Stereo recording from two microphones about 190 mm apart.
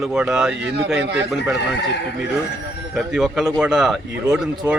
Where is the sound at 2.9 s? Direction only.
Centre (ahead or behind).